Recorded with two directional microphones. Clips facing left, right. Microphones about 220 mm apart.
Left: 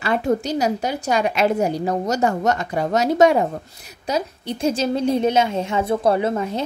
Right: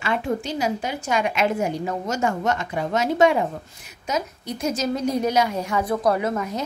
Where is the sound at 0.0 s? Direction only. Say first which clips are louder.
Left 4 dB; 40° left (ahead or behind).